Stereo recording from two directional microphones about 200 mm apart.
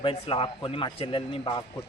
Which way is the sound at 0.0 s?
25° left (ahead or behind).